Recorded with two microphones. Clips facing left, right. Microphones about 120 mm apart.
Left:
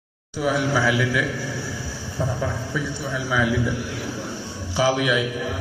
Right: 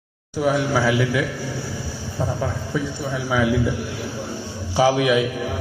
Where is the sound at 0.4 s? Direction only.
40° right (ahead or behind).